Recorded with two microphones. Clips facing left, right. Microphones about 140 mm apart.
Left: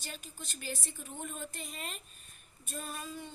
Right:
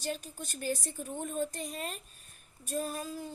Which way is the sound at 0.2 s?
45° right (ahead or behind).